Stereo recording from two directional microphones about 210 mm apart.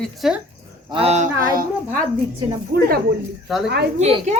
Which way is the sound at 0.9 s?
30° right (ahead or behind).